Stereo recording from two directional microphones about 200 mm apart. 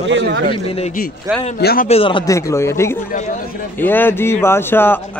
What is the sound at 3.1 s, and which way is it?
Speech, 40° left (ahead or behind).